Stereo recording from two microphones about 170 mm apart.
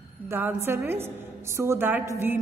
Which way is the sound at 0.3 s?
10° right (ahead or behind).